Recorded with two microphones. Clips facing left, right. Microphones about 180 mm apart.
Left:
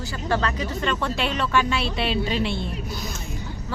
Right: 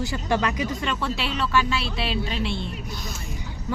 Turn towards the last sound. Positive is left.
turn(degrees=0)  # may be behind; listen again after turning